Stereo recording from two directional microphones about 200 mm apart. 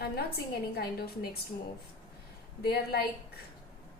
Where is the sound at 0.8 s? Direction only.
50° left (ahead or behind).